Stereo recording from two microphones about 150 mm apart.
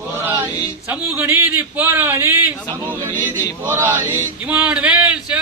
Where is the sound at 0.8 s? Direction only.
15° right (ahead or behind).